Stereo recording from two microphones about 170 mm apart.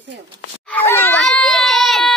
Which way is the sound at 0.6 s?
10° left (ahead or behind).